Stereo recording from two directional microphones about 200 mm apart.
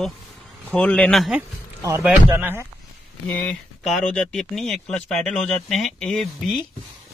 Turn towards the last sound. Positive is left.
turn(degrees=5)  # may be behind; listen again after turning